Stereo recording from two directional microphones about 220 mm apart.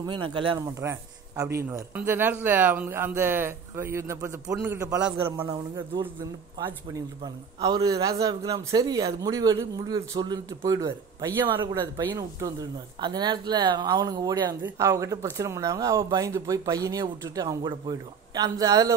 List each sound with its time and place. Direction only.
0.0 s speech: 20° right (ahead or behind)
7.6 s speech: 15° right (ahead or behind)